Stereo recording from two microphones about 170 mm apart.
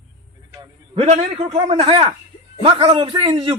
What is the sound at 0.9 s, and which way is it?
A man's voice, 40° right (ahead or behind).